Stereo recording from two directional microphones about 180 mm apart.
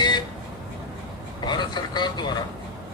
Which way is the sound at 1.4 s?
25° left (ahead or behind).